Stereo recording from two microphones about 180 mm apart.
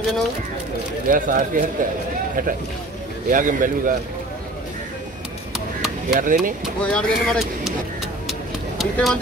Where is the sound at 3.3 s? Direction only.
50° right (ahead or behind).